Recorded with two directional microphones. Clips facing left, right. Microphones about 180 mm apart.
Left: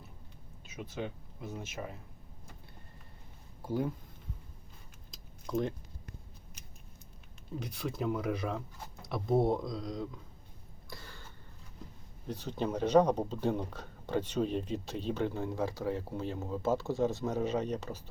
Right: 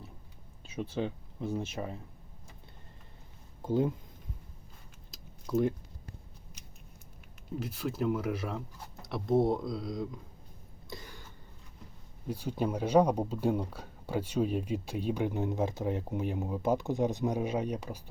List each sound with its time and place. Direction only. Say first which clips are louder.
0.6 s speech: right 5 dB; 30° right (ahead or behind)
3.6 s speech: right 5 dB; 20° right (ahead or behind)
5.1 s typing: right 4 dB; 5° right (ahead or behind)
7.6 s speech: right 3 dB; 5° right (ahead or behind)
10.8 s cough: right 4 dB; 15° right (ahead or behind)
12.3 s speech: right 2 dB; 10° right (ahead or behind)